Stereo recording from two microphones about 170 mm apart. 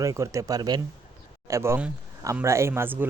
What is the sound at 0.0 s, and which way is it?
A man's voice, 20° right (ahead or behind).